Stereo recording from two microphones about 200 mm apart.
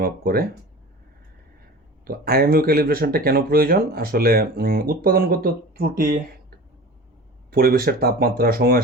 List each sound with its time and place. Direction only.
0.0 s speech: 50° right (ahead or behind)
2.0 s speech: 50° right (ahead or behind)